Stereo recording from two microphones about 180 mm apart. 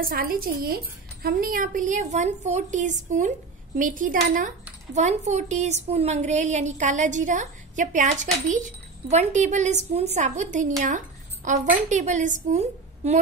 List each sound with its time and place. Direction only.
0.0 s a woman's voice: 55° right (ahead or behind)